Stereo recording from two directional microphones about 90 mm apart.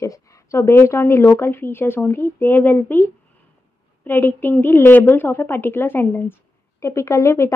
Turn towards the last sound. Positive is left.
turn(degrees=30)  # may be behind; listen again after turning